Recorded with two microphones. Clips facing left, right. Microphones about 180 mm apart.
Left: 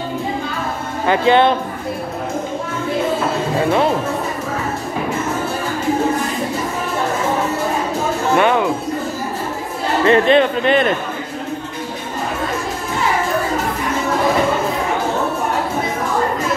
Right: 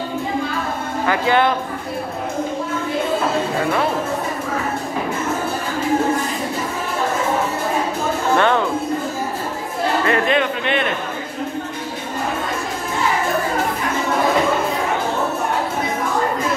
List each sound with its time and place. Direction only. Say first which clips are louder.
1.0 s speech: left 4 dB; 25° left (ahead or behind)
8.4 s speech: left 2 dB; 10° left (ahead or behind)
10.0 s speech: left 9 dB; 30° left (ahead or behind)